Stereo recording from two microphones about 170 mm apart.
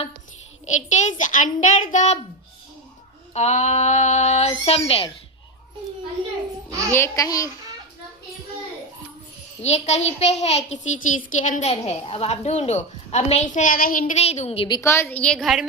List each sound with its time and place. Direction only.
0.6 s a woman's voice: 45° left (ahead or behind)
3.3 s a child's voice: 40° left (ahead or behind)
6.7 s a child's voice: 20° right (ahead or behind)
6.9 s a child's voice: 20° left (ahead or behind)
9.6 s a child's voice: 40° left (ahead or behind); by 14.0 s 55° left (ahead or behind)
14.0 s a child's voice: 40° left (ahead or behind)
14.8 s a woman's voice: 15° left (ahead or behind); by 15.6 s centre (ahead or behind)